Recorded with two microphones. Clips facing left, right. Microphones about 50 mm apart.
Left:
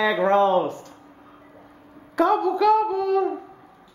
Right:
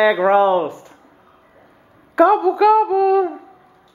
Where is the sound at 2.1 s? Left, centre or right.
Centre.